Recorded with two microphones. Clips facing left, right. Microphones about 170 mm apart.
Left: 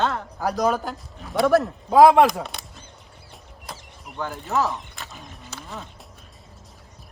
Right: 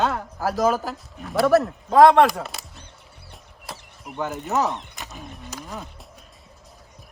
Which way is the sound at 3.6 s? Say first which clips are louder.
Right 2 dB; centre (ahead or behind).